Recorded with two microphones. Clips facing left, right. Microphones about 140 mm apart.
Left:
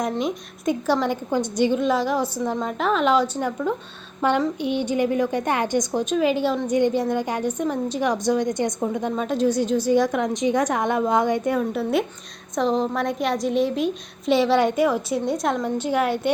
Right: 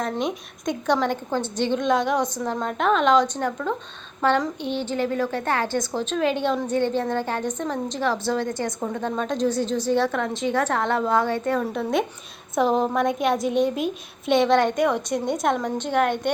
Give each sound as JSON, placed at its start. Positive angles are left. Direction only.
{"t": 0.2, "sound": "a woman's voice", "side_deg": 5}
{"t": 6.1, "sound": "a woman's voice", "side_deg": 5}